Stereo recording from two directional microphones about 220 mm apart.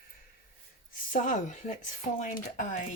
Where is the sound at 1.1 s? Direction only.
35° left (ahead or behind).